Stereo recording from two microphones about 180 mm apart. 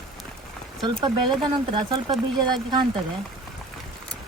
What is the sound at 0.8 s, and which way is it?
Speech, 25° right (ahead or behind).